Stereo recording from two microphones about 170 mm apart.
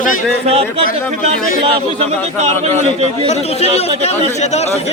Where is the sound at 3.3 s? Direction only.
40° left (ahead or behind).